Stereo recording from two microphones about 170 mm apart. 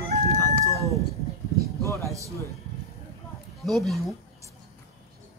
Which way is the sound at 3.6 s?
Centre (ahead or behind).